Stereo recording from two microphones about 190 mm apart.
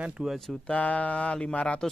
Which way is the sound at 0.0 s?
5° right (ahead or behind).